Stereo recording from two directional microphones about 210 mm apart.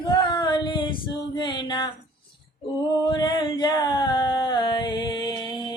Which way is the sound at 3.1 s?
20° left (ahead or behind).